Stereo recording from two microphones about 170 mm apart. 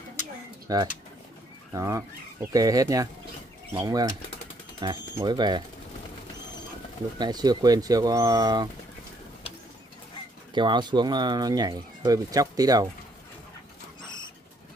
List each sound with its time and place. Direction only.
0.7 s speech: 20° right (ahead or behind)
7.2 s speech: 25° right (ahead or behind)
10.5 s speech: 25° right (ahead or behind)